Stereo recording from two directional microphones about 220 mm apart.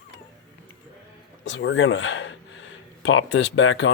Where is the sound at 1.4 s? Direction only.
55° left (ahead or behind).